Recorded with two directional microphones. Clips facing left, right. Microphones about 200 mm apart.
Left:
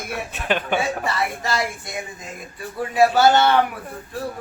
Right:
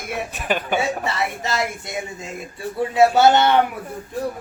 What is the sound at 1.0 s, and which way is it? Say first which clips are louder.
Speech: even; 20° right (ahead or behind).